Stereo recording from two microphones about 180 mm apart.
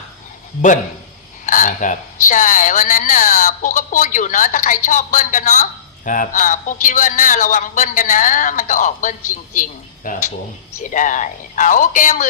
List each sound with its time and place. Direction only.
1.5 s a man's voice: 45° left (ahead or behind)